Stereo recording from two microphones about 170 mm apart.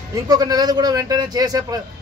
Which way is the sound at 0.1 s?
25° right (ahead or behind).